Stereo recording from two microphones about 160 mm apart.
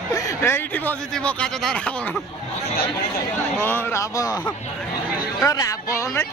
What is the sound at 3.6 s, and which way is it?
Speech, 15° left (ahead or behind).